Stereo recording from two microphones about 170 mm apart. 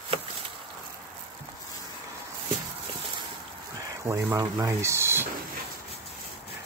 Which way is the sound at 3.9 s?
20° right (ahead or behind).